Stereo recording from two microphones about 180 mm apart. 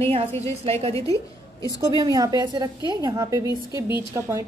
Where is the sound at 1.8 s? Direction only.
20° right (ahead or behind).